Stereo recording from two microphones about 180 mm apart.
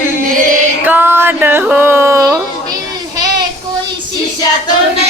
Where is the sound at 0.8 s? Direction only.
10° right (ahead or behind).